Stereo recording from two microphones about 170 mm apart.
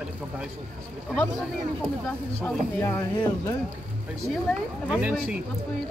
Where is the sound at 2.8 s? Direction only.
20° left (ahead or behind).